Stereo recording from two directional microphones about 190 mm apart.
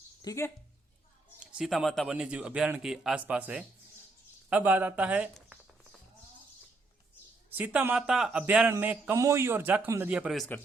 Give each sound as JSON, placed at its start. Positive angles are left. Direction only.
{"t": 0.2, "sound": "speech", "side_deg": 15}
{"t": 1.5, "sound": "a man's voice", "side_deg": 0}
{"t": 4.4, "sound": "a sound", "side_deg": -10}
{"t": 7.5, "sound": "speech", "side_deg": -10}